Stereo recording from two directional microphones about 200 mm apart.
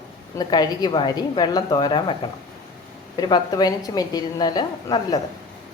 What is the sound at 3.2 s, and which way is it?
A woman's voice, 20° left (ahead or behind).